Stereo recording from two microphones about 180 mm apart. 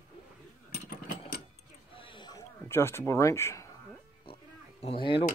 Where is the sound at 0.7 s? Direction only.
55° left (ahead or behind).